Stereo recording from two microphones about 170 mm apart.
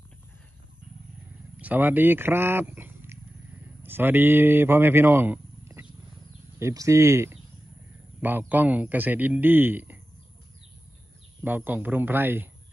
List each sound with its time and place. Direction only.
1.6 s a man's voice: 10° right (ahead or behind)
11.4 s a man's voice: 10° right (ahead or behind)